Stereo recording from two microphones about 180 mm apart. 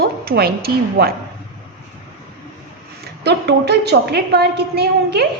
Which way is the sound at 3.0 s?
65° right (ahead or behind).